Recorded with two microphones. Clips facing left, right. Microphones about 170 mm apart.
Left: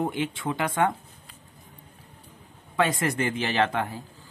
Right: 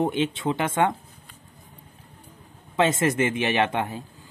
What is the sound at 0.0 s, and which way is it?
Speech, 20° right (ahead or behind).